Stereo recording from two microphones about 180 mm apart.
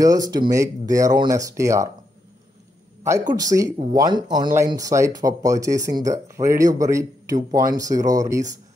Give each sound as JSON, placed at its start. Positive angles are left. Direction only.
{"t": 0.0, "sound": "speech", "side_deg": -20}
{"t": 3.0, "sound": "speech", "side_deg": -15}